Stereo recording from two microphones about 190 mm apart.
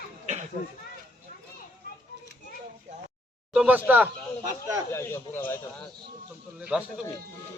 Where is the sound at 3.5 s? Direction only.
5° right (ahead or behind).